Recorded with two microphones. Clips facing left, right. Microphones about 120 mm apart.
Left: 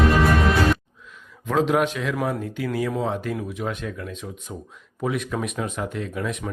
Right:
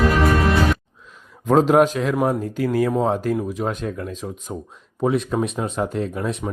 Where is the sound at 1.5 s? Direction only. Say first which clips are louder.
Right 6 dB; 40° right (ahead or behind).